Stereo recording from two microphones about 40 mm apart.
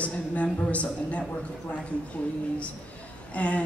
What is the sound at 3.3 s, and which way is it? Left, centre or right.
Speech, left.